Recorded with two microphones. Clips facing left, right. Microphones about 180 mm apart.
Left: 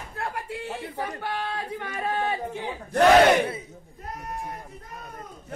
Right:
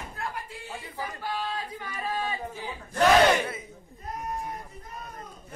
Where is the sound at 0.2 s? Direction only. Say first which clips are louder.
Left 6 dB; 65° left (ahead or behind).